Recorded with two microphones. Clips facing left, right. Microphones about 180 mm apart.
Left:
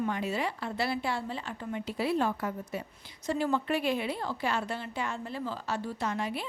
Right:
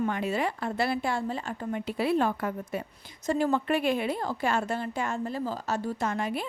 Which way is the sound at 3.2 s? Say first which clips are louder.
Right 3 dB; 45° right (ahead or behind).